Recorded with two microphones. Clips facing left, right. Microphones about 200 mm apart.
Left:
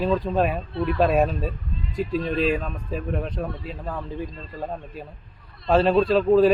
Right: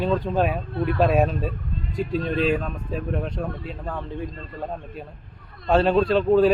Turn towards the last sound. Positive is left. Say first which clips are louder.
# left 1 dB
turn(degrees=0)  # may be behind; listen again after turning